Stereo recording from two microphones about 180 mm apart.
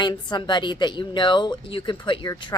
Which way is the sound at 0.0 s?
25° left (ahead or behind).